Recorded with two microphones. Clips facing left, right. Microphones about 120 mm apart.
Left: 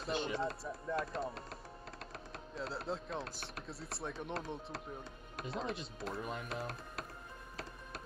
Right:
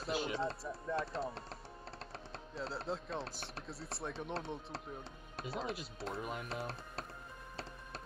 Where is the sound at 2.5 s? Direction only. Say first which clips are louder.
Even; centre (ahead or behind).